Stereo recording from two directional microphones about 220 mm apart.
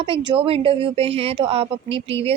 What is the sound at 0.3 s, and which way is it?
A woman's voice, 25° right (ahead or behind).